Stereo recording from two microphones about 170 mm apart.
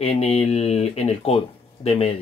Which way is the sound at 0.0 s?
35° left (ahead or behind).